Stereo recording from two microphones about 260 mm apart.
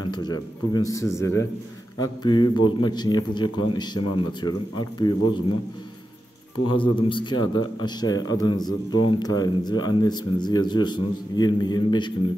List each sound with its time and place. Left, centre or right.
0.2 s speech: centre
6.7 s speech: centre